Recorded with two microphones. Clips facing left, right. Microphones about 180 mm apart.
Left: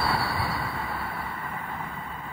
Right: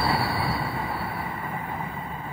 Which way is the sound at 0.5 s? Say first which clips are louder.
Right 3 dB; 25° right (ahead or behind).